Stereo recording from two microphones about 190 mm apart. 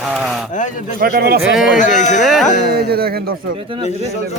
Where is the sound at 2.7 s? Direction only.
55° right (ahead or behind).